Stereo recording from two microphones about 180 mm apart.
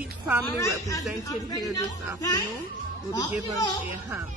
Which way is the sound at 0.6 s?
15° left (ahead or behind).